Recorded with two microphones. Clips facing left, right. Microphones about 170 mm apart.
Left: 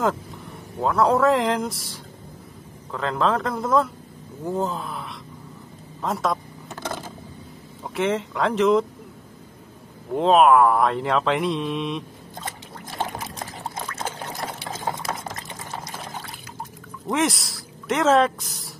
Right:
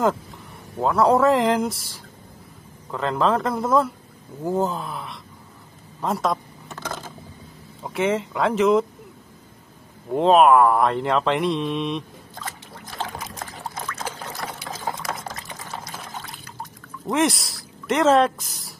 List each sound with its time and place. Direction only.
0.7 s mantra: centre (ahead or behind)
4.5 s groan: centre (ahead or behind)
5.9 s mantra: centre (ahead or behind)
7.8 s mantra: centre (ahead or behind)
10.1 s mantra: centre (ahead or behind)
12.9 s pour: 20° left (ahead or behind)
17.1 s mantra: centre (ahead or behind)